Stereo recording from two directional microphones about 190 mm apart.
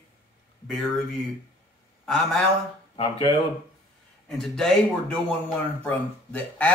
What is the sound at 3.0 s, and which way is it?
Speech, 25° left (ahead or behind).